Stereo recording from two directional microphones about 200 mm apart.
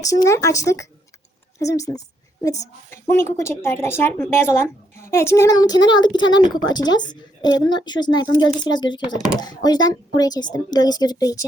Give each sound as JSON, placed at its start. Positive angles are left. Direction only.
{"t": 0.0, "sound": "a woman's voice", "side_deg": 15}